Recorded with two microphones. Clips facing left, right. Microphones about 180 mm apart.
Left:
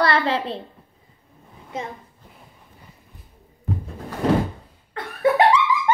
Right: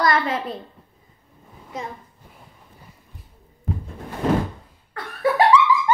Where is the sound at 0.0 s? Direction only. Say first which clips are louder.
Left 1 dB; 30° left (ahead or behind).